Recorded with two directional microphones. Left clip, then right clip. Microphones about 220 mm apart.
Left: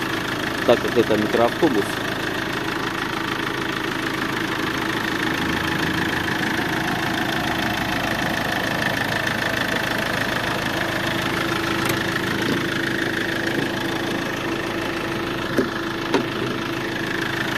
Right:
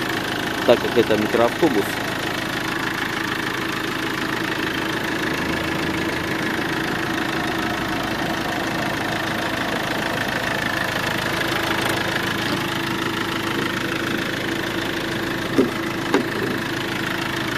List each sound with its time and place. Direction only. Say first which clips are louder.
0.7 s speech: right 1 dB; 10° right (ahead or behind)